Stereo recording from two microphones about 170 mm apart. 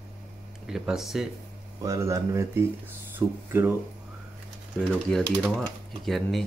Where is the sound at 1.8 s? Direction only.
15° right (ahead or behind).